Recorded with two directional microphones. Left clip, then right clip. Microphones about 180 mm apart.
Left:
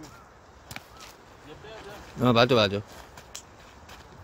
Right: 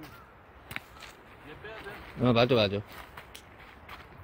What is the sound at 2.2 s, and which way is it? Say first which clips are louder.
Speech: left 4 dB; 10° left (ahead or behind).